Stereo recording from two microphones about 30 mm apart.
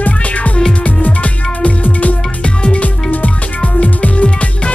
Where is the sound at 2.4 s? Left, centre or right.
Left.